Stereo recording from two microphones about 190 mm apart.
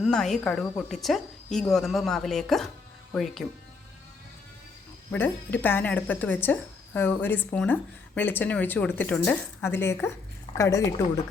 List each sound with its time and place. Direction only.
0.0 s speech: centre (ahead or behind)
5.1 s speech: 10° left (ahead or behind)